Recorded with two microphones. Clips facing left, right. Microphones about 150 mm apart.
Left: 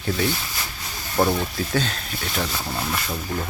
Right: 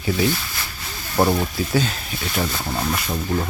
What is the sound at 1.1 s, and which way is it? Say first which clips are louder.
Speech: right 2 dB; 20° right (ahead or behind).